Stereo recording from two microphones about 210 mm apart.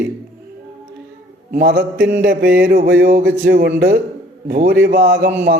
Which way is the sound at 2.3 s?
45° right (ahead or behind).